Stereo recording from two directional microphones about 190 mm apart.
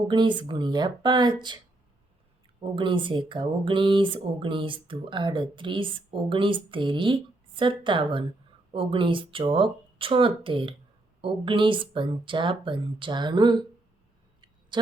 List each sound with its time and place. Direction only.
0.1 s speech: 25° right (ahead or behind)
2.7 s speech: 25° right (ahead or behind)
14.7 s speech: 25° right (ahead or behind)